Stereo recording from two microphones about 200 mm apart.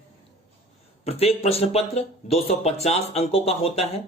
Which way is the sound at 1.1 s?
30° left (ahead or behind).